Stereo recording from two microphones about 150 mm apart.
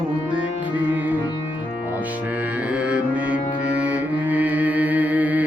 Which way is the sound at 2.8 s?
10° right (ahead or behind).